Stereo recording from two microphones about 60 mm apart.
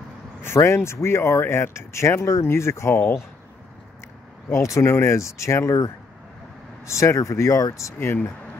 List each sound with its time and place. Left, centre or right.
0.4 s speech: left
4.5 s speech: left
6.9 s speech: left